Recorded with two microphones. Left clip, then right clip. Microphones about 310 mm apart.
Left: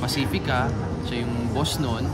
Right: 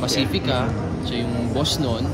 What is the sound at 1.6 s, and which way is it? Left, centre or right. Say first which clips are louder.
Speech: right 4 dB; centre.